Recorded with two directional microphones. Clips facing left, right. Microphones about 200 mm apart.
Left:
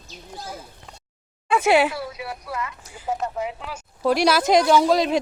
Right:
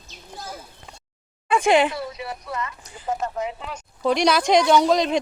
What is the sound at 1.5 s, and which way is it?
Speech, 5° left (ahead or behind).